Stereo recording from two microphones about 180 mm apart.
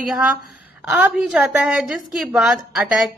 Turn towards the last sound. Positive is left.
turn(degrees=0)  # may be behind; listen again after turning